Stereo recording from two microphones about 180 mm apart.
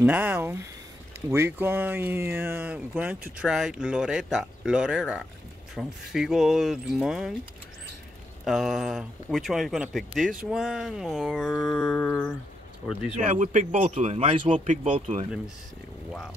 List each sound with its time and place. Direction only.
0.0 s speech: 5° right (ahead or behind)
8.5 s speech: centre (ahead or behind)
13.2 s speech: 45° right (ahead or behind)